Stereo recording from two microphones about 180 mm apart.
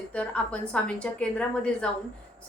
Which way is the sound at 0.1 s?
5° left (ahead or behind).